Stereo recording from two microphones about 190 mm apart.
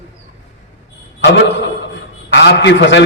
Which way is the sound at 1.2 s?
70° left (ahead or behind).